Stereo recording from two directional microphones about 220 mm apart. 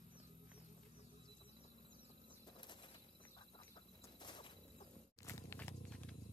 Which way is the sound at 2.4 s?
20° left (ahead or behind).